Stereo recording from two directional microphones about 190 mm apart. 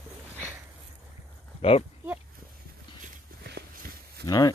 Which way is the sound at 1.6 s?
30° left (ahead or behind).